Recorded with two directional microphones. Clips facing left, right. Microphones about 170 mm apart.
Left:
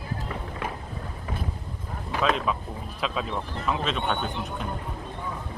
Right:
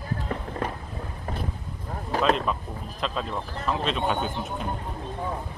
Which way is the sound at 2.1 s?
40° right (ahead or behind).